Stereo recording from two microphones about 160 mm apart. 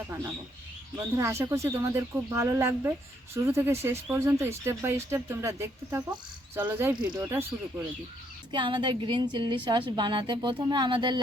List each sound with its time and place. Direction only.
0.9 s speech: 20° right (ahead or behind)
8.5 s a woman's voice: 30° right (ahead or behind)